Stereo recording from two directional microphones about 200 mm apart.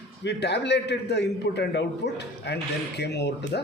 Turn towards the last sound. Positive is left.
turn(degrees=60)  # may be behind; listen again after turning